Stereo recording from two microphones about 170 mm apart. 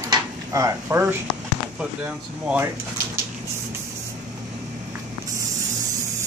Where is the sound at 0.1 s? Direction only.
20° right (ahead or behind).